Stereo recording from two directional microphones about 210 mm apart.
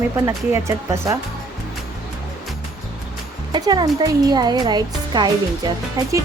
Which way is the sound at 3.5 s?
20° right (ahead or behind).